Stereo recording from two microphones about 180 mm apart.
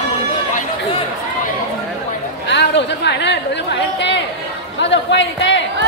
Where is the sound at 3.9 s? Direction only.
80° left.